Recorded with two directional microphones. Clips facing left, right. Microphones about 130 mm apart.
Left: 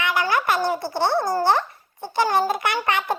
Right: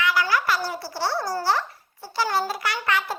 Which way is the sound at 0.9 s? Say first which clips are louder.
Left 4 dB; 55° left (ahead or behind).